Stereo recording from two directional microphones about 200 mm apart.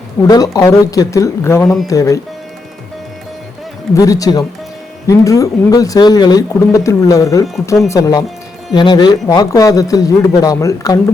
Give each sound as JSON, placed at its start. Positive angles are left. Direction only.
{"t": 0.3, "sound": "speech", "side_deg": 20}
{"t": 3.9, "sound": "speech", "side_deg": 15}